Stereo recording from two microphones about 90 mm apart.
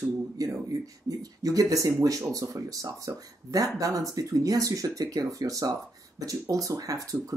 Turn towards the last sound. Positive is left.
turn(degrees=-40)  # may be behind; listen again after turning